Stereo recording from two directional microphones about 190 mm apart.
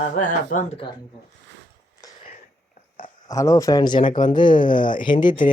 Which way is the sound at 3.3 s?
15° left (ahead or behind).